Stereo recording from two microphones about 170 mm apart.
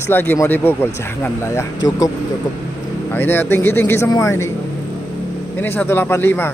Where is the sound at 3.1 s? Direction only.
10° left (ahead or behind).